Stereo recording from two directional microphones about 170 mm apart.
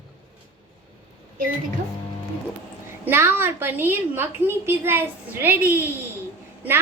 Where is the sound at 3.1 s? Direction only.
15° right (ahead or behind).